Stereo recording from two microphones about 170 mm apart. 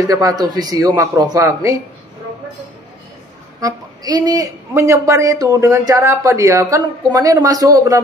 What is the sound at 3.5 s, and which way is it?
A woman's voice, 20° right (ahead or behind).